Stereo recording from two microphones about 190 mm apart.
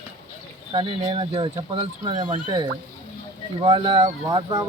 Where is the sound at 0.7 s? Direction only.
30° right (ahead or behind).